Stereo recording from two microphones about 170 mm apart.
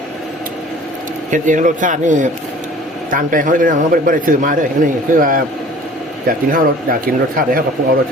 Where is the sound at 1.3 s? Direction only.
50° right (ahead or behind).